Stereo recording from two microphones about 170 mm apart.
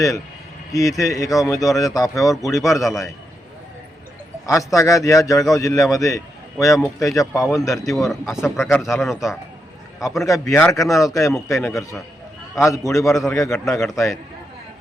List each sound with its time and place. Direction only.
0.7 s a man's voice: 20° left (ahead or behind)
4.4 s a man's voice: 20° left (ahead or behind)
7.7 s speech: centre (ahead or behind)
10.4 s a man's voice: 5° left (ahead or behind)
13.7 s speech: centre (ahead or behind)